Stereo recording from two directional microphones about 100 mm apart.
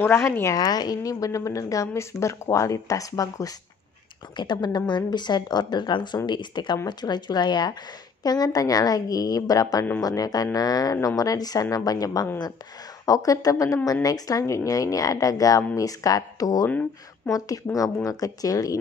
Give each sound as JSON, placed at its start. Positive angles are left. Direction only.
{"t": 0.0, "sound": "speech", "side_deg": 25}
{"t": 0.6, "sound": "speech", "side_deg": 40}
{"t": 4.4, "sound": "speech", "side_deg": 50}
{"t": 18.0, "sound": "speech", "side_deg": 35}